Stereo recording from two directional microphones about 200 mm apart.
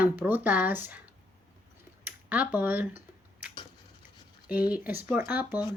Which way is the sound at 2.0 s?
5° right (ahead or behind).